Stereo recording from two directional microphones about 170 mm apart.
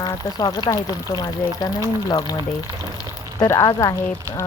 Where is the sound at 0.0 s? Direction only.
25° left (ahead or behind).